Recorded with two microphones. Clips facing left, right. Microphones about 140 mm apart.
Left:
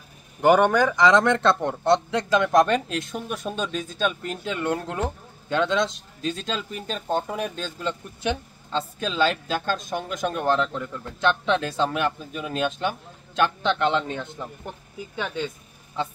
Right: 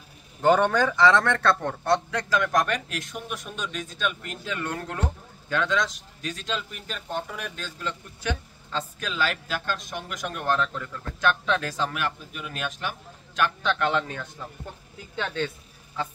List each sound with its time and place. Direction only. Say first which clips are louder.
0.4 s a man's voice: left 3 dB; 15° left (ahead or behind); by 4.6 s 35° left (ahead or behind)
4.6 s a man's voice: left 5 dB; 20° left (ahead or behind)
15.1 s speech: even; 10° left (ahead or behind)